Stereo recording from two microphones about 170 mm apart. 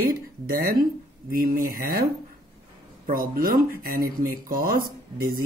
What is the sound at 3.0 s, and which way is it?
Speech, 55° right (ahead or behind).